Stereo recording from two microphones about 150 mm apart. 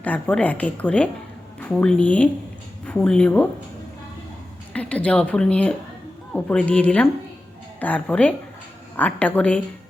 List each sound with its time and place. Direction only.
0.0 s speech: 10° left (ahead or behind)
4.7 s speech: 10° left (ahead or behind)